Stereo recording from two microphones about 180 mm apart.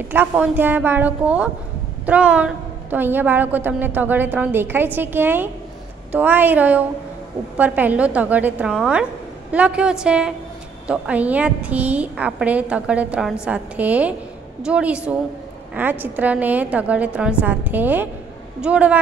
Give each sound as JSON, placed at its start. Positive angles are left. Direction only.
{"t": 0.1, "sound": "a woman's voice", "side_deg": -10}